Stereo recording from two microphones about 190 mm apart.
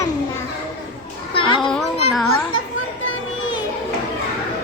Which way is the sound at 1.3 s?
25° left (ahead or behind).